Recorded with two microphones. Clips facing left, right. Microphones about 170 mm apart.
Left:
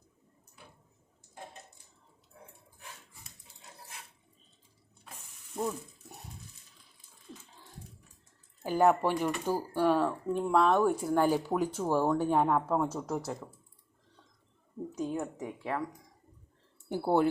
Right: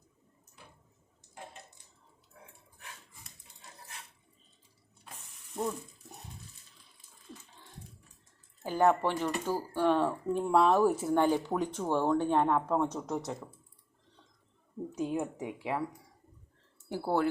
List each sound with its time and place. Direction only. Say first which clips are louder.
5.5 s ratchet: even; centre (ahead or behind)
7.3 s a sound: even; 10° right (ahead or behind)
8.6 s speech: left 1 dB; 10° left (ahead or behind)
10.1 s speech: even; 5° right (ahead or behind)
14.9 s speech: right 1 dB; 10° right (ahead or behind)
16.9 s speech: left 3 dB; 20° left (ahead or behind)